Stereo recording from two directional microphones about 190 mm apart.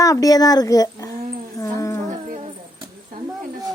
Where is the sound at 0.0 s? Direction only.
20° left (ahead or behind).